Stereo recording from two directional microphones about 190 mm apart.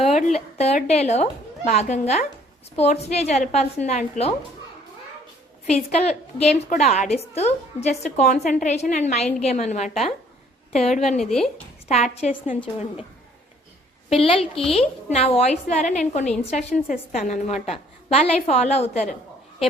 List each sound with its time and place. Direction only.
0.0 s a sound: 35° left (ahead or behind)
0.6 s a woman's voice: 35° left (ahead or behind)
5.6 s a woman's voice: 35° left (ahead or behind)
11.2 s speech: centre (ahead or behind)
11.9 s a woman's voice: 35° left (ahead or behind)
14.1 s a woman's voice: 30° left (ahead or behind)